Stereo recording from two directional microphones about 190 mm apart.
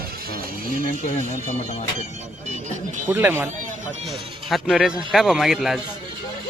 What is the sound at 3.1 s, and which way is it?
Speech, 10° right (ahead or behind).